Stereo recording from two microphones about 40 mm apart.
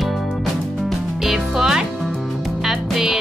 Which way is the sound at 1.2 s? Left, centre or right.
Centre.